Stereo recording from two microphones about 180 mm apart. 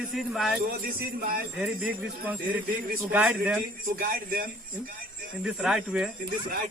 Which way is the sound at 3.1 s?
5° right (ahead or behind).